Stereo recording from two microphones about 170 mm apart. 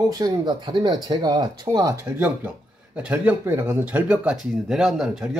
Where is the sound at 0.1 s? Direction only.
25° right (ahead or behind).